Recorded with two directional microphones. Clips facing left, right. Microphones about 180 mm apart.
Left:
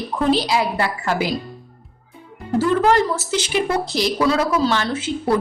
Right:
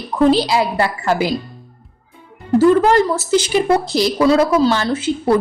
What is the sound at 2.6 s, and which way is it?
A woman's voice, 40° right (ahead or behind).